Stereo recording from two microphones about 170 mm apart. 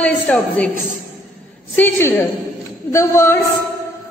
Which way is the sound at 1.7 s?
15° left (ahead or behind).